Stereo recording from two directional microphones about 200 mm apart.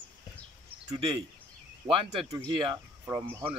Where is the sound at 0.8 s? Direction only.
25° right (ahead or behind).